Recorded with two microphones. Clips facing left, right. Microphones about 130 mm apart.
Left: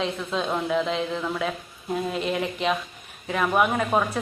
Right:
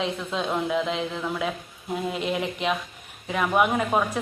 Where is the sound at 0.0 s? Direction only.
10° right (ahead or behind).